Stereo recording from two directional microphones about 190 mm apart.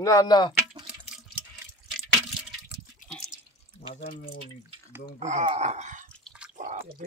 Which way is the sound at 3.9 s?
50° left (ahead or behind).